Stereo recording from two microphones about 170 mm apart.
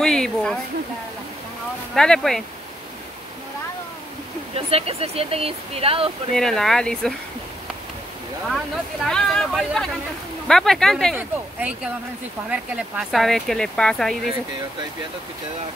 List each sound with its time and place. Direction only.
0.0 s speech: 5° left (ahead or behind)
2.0 s speech: 5° left (ahead or behind)
4.6 s speech: 35° right (ahead or behind)
6.3 s speech: 5° left (ahead or behind)
8.5 s speech: centre (ahead or behind)
11.1 s speech: 10° right (ahead or behind)